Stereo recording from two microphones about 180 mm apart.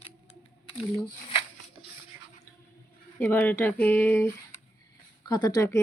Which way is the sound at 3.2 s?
10° left (ahead or behind).